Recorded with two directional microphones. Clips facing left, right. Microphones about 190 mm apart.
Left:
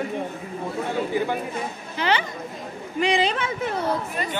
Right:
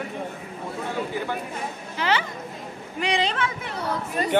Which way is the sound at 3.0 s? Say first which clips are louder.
Left 3 dB; 5° left (ahead or behind).